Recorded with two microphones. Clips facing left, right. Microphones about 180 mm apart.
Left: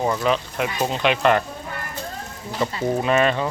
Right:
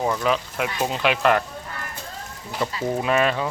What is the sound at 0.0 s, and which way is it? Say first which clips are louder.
Speech: left 1 dB; 5° left (ahead or behind).